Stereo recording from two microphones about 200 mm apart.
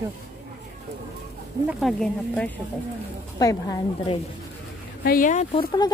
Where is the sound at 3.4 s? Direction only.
20° left (ahead or behind).